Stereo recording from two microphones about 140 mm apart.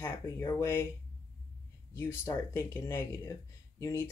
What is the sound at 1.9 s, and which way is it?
Speech, 20° left (ahead or behind).